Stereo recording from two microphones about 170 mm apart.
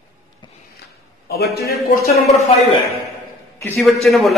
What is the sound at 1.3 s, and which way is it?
Speech, 65° left (ahead or behind).